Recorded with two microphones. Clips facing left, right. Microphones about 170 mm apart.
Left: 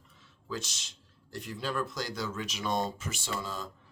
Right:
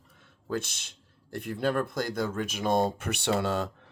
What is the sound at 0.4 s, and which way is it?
Speech, 55° right (ahead or behind).